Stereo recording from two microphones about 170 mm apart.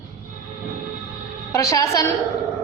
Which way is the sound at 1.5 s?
20° left (ahead or behind).